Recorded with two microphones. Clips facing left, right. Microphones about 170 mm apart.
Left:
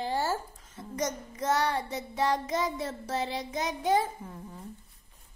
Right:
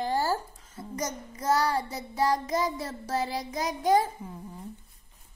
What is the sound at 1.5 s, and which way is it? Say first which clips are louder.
Child singing: right 3 dB; 35° right (ahead or behind).